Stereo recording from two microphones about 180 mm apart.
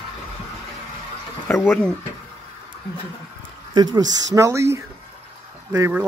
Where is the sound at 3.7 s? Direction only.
25° right (ahead or behind).